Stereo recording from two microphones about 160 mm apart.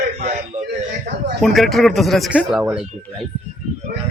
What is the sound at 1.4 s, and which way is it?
Speech, centre (ahead or behind).